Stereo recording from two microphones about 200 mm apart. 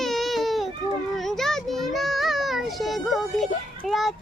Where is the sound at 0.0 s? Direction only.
Centre (ahead or behind).